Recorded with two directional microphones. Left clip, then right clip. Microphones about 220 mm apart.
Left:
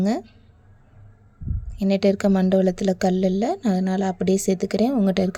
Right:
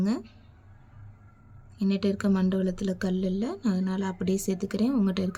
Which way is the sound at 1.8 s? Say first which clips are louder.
Left 9 dB; 30° left (ahead or behind).